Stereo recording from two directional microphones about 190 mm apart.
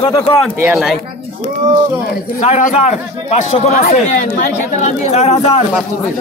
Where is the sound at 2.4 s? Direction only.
35° left (ahead or behind).